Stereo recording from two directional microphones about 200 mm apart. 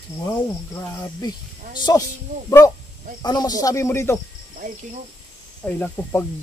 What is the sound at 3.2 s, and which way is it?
Speech, 20° left (ahead or behind).